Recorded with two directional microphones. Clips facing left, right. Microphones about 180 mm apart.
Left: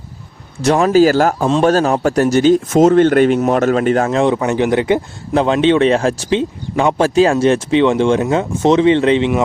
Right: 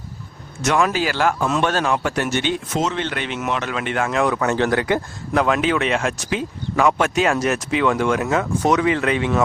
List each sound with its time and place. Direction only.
0.6 s a man's voice: 35° left (ahead or behind)